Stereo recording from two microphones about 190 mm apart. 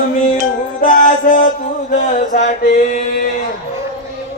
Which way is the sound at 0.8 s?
45° left (ahead or behind).